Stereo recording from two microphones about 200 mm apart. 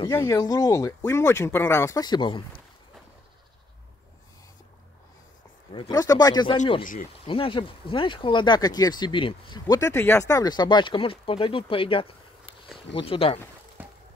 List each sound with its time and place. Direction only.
0.0 s speech: 15° left (ahead or behind)
5.7 s speech: 20° left (ahead or behind)
6.6 s speech: 40° left (ahead or behind)
7.2 s speech: 25° left (ahead or behind)
13.8 s a sound: 10° right (ahead or behind)